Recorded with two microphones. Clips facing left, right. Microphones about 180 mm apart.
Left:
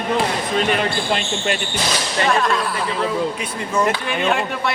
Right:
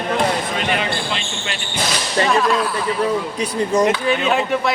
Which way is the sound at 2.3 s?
Centre (ahead or behind).